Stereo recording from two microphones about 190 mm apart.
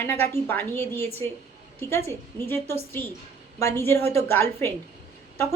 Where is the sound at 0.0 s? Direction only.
10° left (ahead or behind).